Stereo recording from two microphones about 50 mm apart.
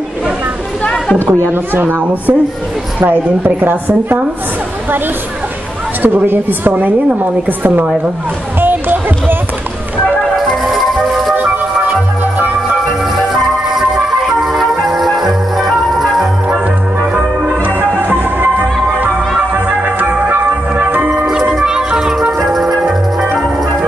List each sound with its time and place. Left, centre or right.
1.5 s a woman's voice: right
6.0 s a woman's voice: right
8.5 s music: right
10.3 s music: centre
13.3 s music: centre
17.6 s music: right
19.5 s music: right
21.6 s music: centre
22.4 s music: centre